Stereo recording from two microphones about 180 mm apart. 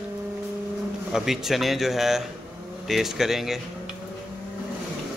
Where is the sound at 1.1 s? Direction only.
Centre (ahead or behind).